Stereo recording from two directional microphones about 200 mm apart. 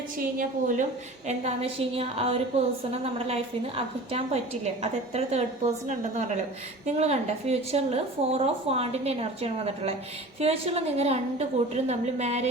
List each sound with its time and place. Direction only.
1.3 s a woman's voice: 30° right (ahead or behind)